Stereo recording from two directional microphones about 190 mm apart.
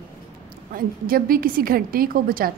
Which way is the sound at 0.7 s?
50° right (ahead or behind).